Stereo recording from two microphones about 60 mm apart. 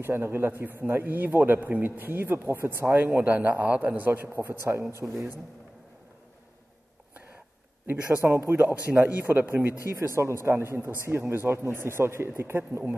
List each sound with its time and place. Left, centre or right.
0.0 s a man's voice: right
3.2 s a man's voice: right
4.3 s a man's voice: right
8.2 s a man's voice: right
8.6 s a man's voice: right
9.8 s a man's voice: right